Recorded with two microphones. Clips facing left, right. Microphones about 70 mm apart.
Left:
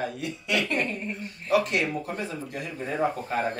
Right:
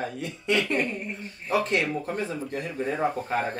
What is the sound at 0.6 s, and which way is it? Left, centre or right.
Speech, centre.